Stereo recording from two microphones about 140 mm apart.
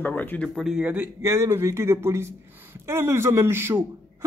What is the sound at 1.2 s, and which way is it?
A woman's voice, 20° right (ahead or behind).